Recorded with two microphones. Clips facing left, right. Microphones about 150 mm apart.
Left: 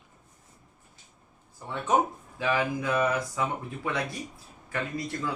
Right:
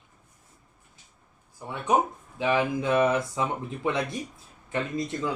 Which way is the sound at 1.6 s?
15° right (ahead or behind).